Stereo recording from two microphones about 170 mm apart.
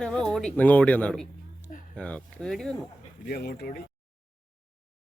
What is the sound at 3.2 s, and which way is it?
Speech, 65° left (ahead or behind).